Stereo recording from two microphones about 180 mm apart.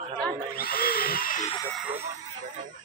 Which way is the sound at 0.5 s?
55° left (ahead or behind).